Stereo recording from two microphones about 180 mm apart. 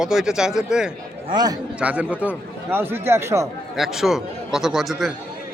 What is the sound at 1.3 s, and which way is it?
Speech, 20° right (ahead or behind).